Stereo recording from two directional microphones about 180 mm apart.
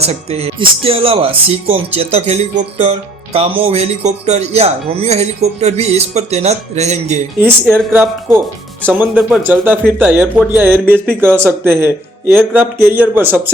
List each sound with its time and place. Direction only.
0.0 s speech: 35° right (ahead or behind)
7.7 s speech: 10° right (ahead or behind)